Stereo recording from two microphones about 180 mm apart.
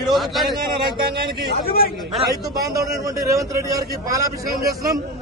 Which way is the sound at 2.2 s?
20° right (ahead or behind).